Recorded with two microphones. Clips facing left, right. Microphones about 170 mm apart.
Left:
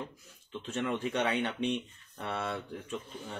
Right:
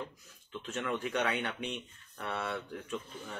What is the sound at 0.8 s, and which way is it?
Speech, 25° left (ahead or behind).